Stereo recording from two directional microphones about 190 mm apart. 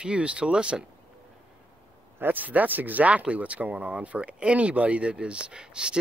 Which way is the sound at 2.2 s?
10° right (ahead or behind).